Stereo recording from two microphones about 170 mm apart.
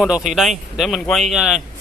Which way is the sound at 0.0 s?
5° right (ahead or behind).